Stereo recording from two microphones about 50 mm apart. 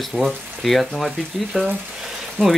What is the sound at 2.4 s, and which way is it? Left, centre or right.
Speech, right.